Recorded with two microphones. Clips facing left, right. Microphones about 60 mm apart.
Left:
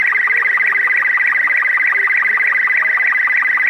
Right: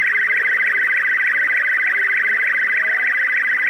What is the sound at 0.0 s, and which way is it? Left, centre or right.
Music, left.